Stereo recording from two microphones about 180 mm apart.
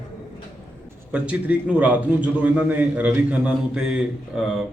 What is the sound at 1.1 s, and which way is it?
A man's voice, 5° right (ahead or behind).